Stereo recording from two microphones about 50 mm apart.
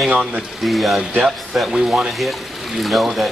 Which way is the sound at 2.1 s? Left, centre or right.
Centre.